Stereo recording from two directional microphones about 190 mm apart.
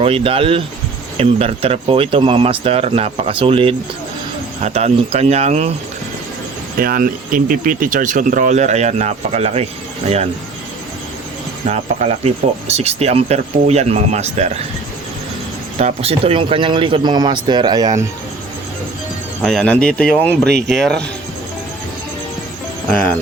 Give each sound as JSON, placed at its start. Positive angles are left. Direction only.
{"t": 0.0, "sound": "speech", "side_deg": -30}
{"t": 6.7, "sound": "speech", "side_deg": -50}
{"t": 11.6, "sound": "speech", "side_deg": -35}
{"t": 15.8, "sound": "speech", "side_deg": -30}
{"t": 19.4, "sound": "speech", "side_deg": 5}